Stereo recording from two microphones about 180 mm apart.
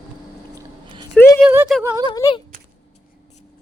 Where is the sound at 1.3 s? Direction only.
10° right (ahead or behind).